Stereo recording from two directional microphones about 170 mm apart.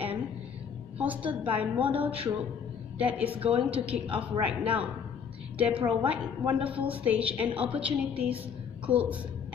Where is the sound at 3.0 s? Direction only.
10° right (ahead or behind).